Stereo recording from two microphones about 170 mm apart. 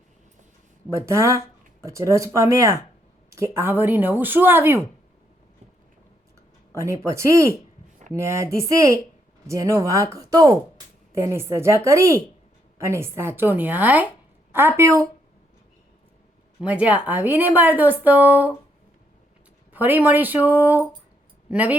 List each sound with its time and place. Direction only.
0.9 s a woman's voice: 15° right (ahead or behind)
6.7 s a woman's voice: 15° right (ahead or behind)
16.6 s a woman's voice: 10° right (ahead or behind)
19.7 s a woman's voice: 10° right (ahead or behind)